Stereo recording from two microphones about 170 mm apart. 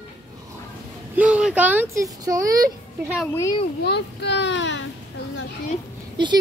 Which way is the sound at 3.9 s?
90° left.